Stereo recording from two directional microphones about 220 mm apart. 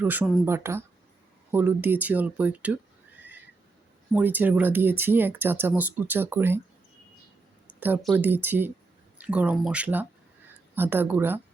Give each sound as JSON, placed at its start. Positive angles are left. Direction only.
{"t": 0.0, "sound": "speech", "side_deg": -10}
{"t": 4.1, "sound": "speech", "side_deg": -10}
{"t": 7.8, "sound": "speech", "side_deg": -10}